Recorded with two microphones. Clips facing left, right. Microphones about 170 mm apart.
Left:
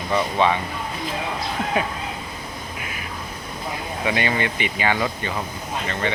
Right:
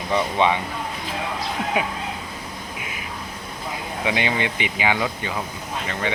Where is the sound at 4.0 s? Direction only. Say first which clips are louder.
Left 1 dB; 15° right (ahead or behind).